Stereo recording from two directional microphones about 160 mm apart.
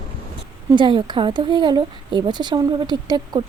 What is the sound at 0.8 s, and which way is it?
Speech, 30° right (ahead or behind).